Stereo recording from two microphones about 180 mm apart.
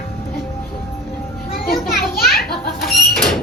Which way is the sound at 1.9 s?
60° left (ahead or behind).